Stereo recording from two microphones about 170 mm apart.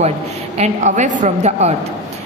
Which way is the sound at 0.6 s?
45° right (ahead or behind).